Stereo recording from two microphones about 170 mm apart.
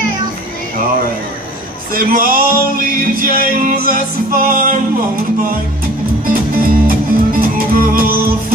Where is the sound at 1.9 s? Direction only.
55° right (ahead or behind).